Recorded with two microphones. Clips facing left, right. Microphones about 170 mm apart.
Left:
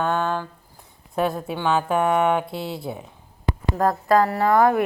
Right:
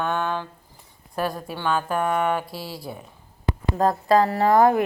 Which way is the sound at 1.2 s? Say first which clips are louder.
Left 3 dB; 20° left (ahead or behind).